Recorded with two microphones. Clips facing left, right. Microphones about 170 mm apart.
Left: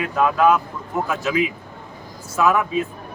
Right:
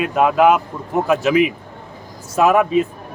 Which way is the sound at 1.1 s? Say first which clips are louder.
Right 8 dB; 85° right.